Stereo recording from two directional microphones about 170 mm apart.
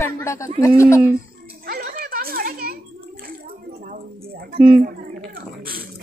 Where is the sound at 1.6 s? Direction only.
65° right (ahead or behind).